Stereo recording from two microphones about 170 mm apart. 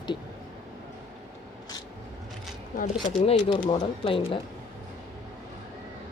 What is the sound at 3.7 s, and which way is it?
Speech, 30° left (ahead or behind).